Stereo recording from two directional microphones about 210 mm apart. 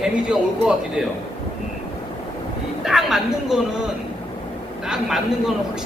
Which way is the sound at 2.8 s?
Centre (ahead or behind).